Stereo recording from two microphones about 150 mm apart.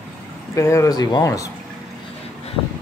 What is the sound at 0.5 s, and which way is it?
Speech, 20° left (ahead or behind).